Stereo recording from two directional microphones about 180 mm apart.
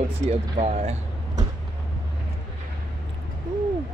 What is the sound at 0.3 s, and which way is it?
Speech, 35° right (ahead or behind).